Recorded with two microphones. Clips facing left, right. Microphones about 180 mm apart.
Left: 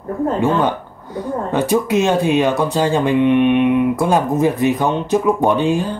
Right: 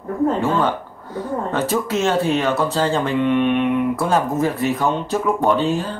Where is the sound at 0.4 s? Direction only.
15° left (ahead or behind).